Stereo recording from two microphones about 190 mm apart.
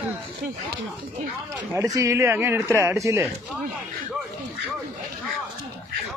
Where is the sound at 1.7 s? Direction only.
15° right (ahead or behind).